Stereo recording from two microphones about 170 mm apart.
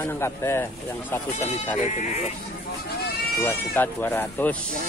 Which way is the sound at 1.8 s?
45° left (ahead or behind).